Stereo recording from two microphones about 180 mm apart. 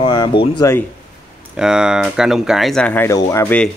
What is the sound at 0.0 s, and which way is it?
Speech, 25° left (ahead or behind).